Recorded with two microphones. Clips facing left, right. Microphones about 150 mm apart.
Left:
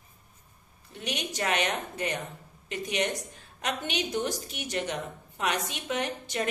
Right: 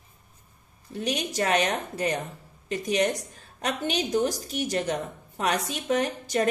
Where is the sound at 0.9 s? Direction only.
40° right (ahead or behind).